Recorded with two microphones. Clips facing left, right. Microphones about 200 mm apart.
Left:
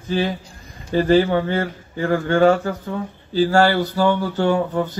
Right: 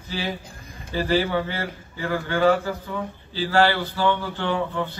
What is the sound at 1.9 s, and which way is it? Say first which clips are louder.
A man's voice: left 7 dB; 45° left (ahead or behind).